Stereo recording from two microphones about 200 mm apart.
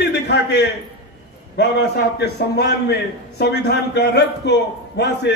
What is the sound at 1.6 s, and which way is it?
A man's voice, 55° left (ahead or behind).